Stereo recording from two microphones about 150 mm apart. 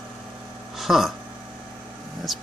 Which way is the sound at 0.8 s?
Centre (ahead or behind).